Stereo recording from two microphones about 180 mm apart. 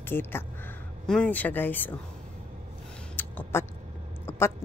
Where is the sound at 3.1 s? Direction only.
10° left (ahead or behind).